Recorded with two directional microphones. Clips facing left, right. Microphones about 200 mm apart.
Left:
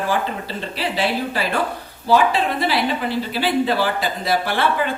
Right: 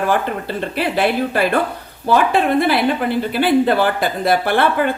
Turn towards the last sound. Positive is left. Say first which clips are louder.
# right 4 dB
turn(degrees=-55)  # may be behind; listen again after turning